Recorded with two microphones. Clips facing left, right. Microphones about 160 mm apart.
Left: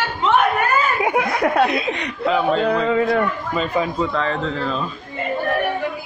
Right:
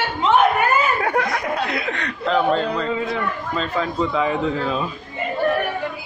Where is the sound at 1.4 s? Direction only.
60° left (ahead or behind).